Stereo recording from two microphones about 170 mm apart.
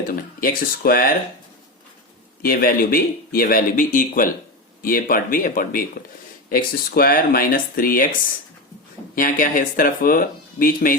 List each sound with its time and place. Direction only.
0.1 s speech: 55° left (ahead or behind)
2.4 s speech: 60° left (ahead or behind)
9.1 s speech: 55° left (ahead or behind)